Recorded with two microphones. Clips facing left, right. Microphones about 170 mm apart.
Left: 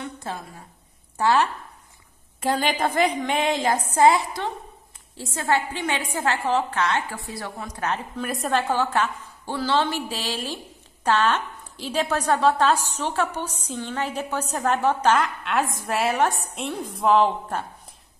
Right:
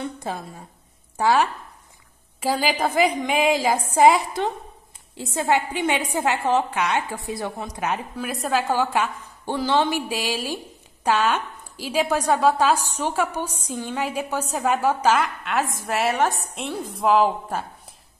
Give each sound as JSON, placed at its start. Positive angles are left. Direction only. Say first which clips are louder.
{"t": 1.1, "sound": "a woman's voice", "louder": "right 1 dB", "side_deg": -10}
{"t": 8.3, "sound": "a woman's voice", "louder": "right 1 dB", "side_deg": 0}